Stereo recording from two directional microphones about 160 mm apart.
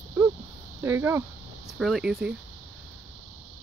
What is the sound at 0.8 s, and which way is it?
Speech, 15° right (ahead or behind).